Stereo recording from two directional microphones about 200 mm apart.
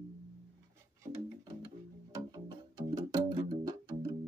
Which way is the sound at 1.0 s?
20° right (ahead or behind).